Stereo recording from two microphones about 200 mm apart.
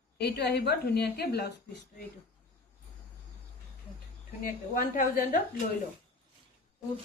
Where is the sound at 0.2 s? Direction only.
55° left (ahead or behind).